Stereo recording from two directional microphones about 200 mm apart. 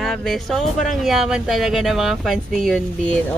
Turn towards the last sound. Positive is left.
turn(degrees=5)  # may be behind; listen again after turning